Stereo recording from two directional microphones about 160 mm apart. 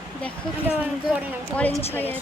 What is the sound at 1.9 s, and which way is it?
Speech, 10° left (ahead or behind).